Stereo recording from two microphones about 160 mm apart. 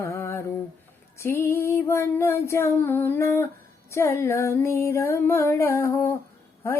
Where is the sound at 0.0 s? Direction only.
15° left (ahead or behind).